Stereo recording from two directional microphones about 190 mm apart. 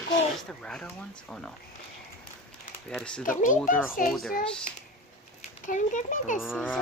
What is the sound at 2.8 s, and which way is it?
Speech, 5° left (ahead or behind).